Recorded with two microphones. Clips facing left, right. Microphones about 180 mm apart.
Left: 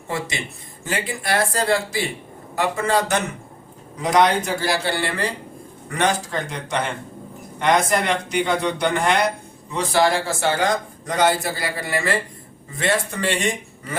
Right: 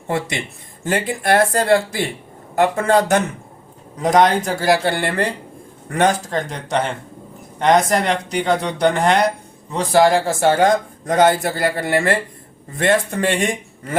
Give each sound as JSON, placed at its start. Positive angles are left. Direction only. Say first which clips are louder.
{"t": 0.9, "sound": "speech", "louder": "right 6 dB", "side_deg": -50}
{"t": 7.6, "sound": "speech", "louder": "right 4 dB", "side_deg": -40}